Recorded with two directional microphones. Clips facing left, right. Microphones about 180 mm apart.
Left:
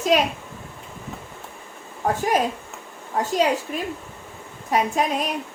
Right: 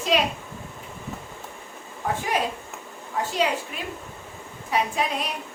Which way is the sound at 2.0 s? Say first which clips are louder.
Left 5 dB; 45° left (ahead or behind).